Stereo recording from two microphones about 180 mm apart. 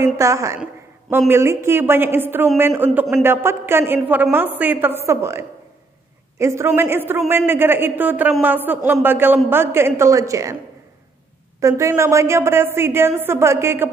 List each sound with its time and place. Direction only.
0.0 s a woman's voice: 15° right (ahead or behind)
11.6 s a woman's voice: 15° right (ahead or behind)